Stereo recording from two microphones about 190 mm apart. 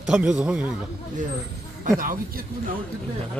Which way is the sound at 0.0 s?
5° right (ahead or behind).